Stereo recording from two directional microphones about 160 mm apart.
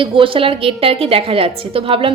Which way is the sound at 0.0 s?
35° right (ahead or behind).